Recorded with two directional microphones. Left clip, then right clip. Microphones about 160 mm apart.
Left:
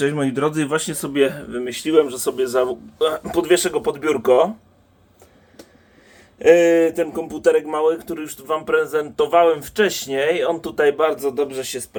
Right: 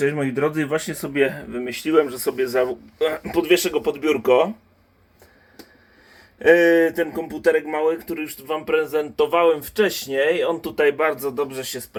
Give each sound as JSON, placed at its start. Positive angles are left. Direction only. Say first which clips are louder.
{"t": 0.3, "sound": "speech", "louder": "left 1 dB", "side_deg": 15}
{"t": 3.1, "sound": "speech", "louder": "even", "side_deg": 0}
{"t": 6.4, "sound": "speech", "louder": "left 2 dB", "side_deg": 10}
{"t": 7.5, "sound": "speech", "louder": "left 2 dB", "side_deg": 5}
{"t": 11.0, "sound": "speech", "louder": "left 3 dB", "side_deg": 20}